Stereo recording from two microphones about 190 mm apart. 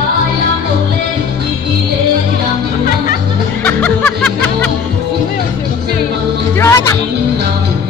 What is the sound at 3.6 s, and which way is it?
Music, 10° left (ahead or behind).